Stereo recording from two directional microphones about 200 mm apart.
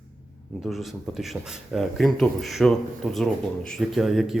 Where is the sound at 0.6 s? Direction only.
Centre (ahead or behind).